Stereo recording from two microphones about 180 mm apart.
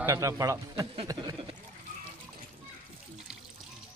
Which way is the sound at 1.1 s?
25° right (ahead or behind).